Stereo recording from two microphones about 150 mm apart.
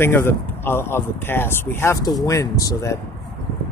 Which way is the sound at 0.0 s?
15° left (ahead or behind).